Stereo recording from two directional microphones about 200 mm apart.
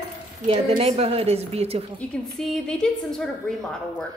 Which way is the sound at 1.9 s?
Centre (ahead or behind).